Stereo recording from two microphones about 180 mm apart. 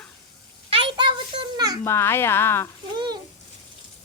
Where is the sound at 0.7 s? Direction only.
30° right (ahead or behind).